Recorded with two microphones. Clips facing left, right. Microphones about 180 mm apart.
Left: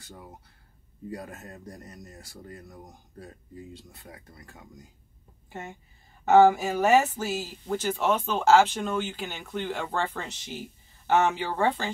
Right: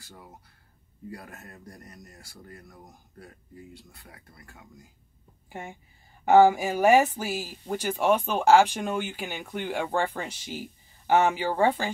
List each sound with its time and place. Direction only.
1.1 s speech: 20° left (ahead or behind)
5.5 s a woman's voice: 10° right (ahead or behind)